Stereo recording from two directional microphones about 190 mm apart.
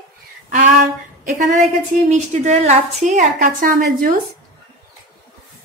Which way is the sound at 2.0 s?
35° right (ahead or behind).